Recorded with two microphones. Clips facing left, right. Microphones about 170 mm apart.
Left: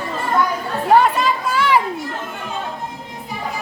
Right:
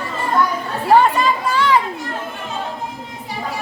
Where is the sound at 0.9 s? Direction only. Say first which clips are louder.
Right 1 dB; centre (ahead or behind).